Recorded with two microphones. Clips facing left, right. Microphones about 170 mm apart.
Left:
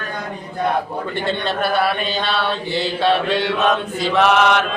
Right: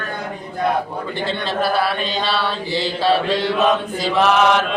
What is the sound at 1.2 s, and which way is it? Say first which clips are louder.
Chant: right 1 dB; centre (ahead or behind).